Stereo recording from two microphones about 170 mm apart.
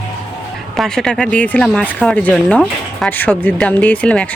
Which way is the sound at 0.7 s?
Centre (ahead or behind).